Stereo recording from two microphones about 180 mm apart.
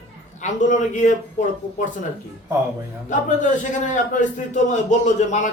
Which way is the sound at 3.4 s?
45° left (ahead or behind).